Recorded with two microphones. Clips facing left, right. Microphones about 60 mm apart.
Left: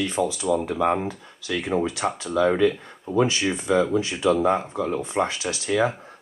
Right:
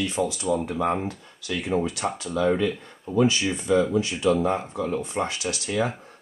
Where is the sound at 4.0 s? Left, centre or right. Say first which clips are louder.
Left 1 dB; left.